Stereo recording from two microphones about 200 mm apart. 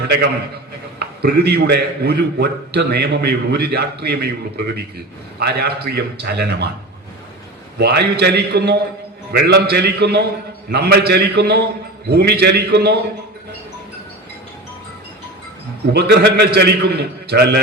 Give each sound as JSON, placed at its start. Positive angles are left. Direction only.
{"t": 0.9, "sound": "a man's voice", "side_deg": -55}
{"t": 7.8, "sound": "a man's voice", "side_deg": -55}
{"t": 15.9, "sound": "a man's voice", "side_deg": -50}